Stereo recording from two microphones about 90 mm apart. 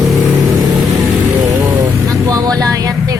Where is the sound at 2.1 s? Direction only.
40° right (ahead or behind).